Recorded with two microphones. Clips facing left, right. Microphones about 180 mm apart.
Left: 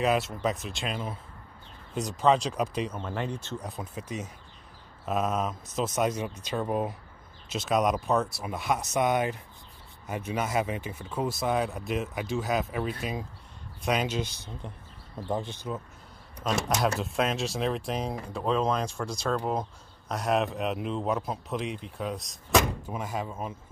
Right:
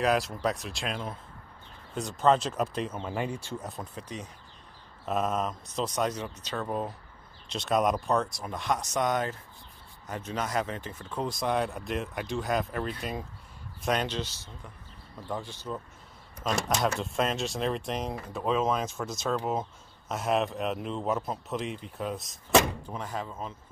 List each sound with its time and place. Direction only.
0.0 s speech: centre (ahead or behind)
3.6 s speech: 5° left (ahead or behind)
16.4 s speech: centre (ahead or behind)
22.8 s speech: 10° left (ahead or behind)